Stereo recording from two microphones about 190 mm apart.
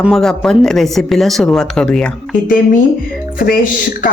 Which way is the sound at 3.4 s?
50° left (ahead or behind).